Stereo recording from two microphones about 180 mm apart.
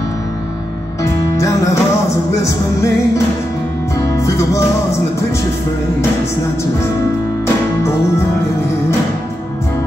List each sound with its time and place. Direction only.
1.3 s music: 15° left (ahead or behind)
4.1 s music: 15° left (ahead or behind)